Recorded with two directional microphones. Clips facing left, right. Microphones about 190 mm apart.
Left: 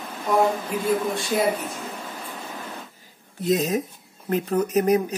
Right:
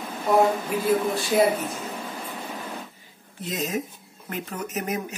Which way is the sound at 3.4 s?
35° left (ahead or behind).